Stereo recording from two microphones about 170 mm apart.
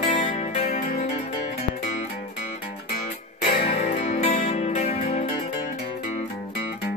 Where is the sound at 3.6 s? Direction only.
40° left (ahead or behind).